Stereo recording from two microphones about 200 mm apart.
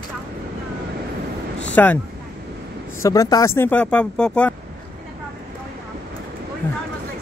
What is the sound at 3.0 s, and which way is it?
Speech, 15° left (ahead or behind).